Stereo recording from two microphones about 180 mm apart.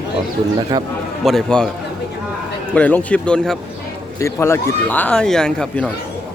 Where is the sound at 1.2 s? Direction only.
Centre (ahead or behind).